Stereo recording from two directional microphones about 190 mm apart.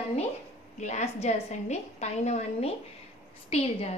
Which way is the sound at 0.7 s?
35° left (ahead or behind).